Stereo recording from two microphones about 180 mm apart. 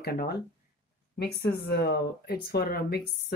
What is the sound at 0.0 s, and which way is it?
Speech, 60° left (ahead or behind).